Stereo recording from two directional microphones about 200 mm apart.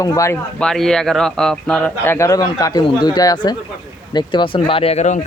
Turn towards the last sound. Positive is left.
turn(degrees=35)  # may be behind; listen again after turning